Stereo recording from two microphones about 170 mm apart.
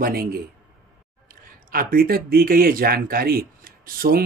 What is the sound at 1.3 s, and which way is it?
Speech, 60° right (ahead or behind).